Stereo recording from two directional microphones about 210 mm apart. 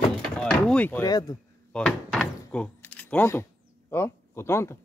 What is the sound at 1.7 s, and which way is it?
Door, 5° left (ahead or behind).